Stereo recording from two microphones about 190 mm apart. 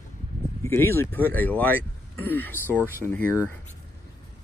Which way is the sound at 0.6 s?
15° left (ahead or behind).